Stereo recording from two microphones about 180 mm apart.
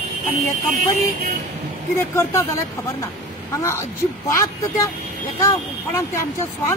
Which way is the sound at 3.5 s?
15° left (ahead or behind).